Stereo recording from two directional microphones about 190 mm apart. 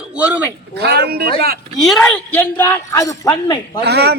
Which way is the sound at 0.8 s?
60° right (ahead or behind).